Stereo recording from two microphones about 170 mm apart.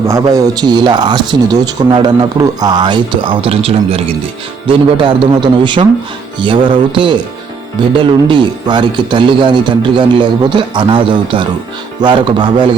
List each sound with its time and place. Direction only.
0.1 s speech: 20° right (ahead or behind)
8.3 s speech: 25° right (ahead or behind)